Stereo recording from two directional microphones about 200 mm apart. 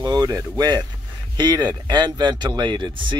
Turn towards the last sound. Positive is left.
turn(degrees=-25)  # may be behind; listen again after turning